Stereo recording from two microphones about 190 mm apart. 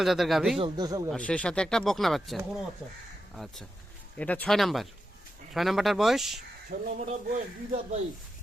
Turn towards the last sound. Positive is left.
turn(degrees=-40)  # may be behind; listen again after turning